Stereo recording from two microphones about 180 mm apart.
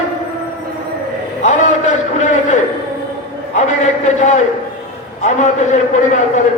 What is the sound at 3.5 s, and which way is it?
A man's voice, 40° left (ahead or behind).